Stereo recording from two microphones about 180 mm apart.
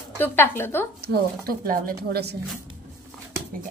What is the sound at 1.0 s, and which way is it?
Speech, 55° right (ahead or behind).